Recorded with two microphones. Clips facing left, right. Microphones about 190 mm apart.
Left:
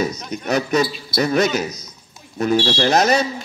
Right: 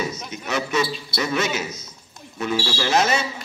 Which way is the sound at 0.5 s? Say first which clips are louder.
Left 5 dB; 40° left (ahead or behind).